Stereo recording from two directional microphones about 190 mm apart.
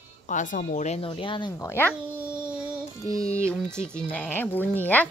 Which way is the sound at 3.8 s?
5° left (ahead or behind).